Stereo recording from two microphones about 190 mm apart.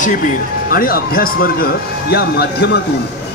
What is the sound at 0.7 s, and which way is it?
Speech, 50° left (ahead or behind).